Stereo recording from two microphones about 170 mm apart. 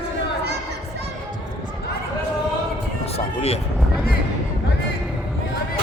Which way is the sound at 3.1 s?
35° left (ahead or behind).